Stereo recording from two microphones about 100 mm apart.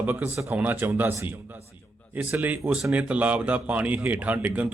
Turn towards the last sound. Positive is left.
turn(degrees=-15)  # may be behind; listen again after turning